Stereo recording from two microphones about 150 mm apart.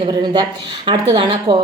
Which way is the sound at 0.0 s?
30° right (ahead or behind).